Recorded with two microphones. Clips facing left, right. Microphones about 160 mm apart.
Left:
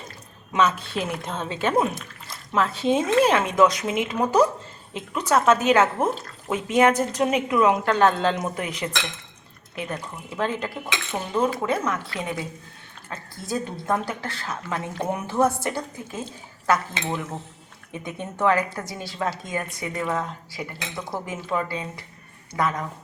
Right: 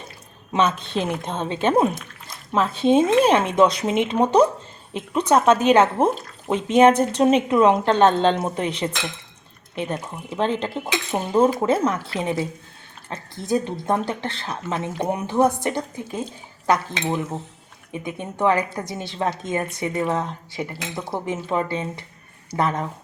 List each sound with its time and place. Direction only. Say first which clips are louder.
0.5 s a woman's voice: right 1 dB; 25° right (ahead or behind)
17.9 s a woman's voice: right 3 dB; 15° right (ahead or behind)